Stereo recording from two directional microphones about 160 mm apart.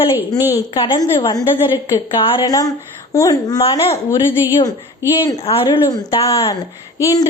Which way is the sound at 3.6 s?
35° left (ahead or behind).